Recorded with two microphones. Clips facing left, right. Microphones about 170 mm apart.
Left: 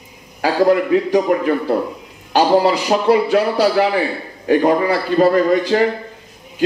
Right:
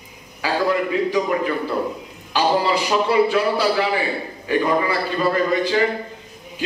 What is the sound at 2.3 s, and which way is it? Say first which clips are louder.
A man's voice: left 5 dB; 55° left (ahead or behind).